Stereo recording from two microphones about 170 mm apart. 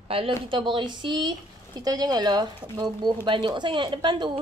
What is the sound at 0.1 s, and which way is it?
A woman's voice, 30° right (ahead or behind).